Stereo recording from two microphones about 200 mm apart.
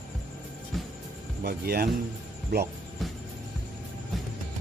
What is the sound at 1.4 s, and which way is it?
Speech, 50° right (ahead or behind).